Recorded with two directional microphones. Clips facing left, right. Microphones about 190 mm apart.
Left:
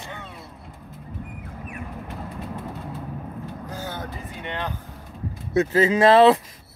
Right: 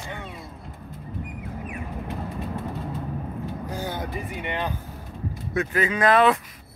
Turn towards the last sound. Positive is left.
turn(degrees=25)  # may be behind; listen again after turning